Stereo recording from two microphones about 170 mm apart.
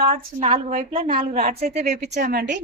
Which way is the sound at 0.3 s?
40° right (ahead or behind).